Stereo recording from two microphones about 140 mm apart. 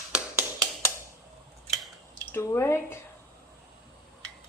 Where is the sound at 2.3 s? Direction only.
20° left (ahead or behind).